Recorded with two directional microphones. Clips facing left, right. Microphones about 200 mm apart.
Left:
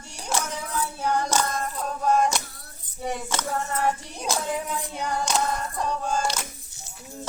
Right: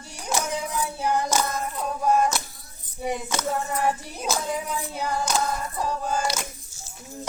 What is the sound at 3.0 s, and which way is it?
Hands, 10° right (ahead or behind).